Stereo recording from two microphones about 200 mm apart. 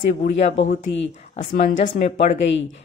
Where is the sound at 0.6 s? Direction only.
70° left (ahead or behind).